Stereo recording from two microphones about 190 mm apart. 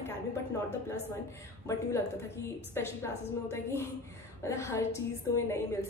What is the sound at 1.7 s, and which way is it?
A woman's voice, 15° left (ahead or behind).